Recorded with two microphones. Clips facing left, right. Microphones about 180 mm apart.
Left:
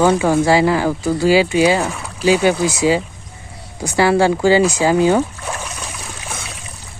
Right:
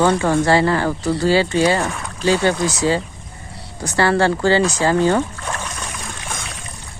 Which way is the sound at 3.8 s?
10° left (ahead or behind).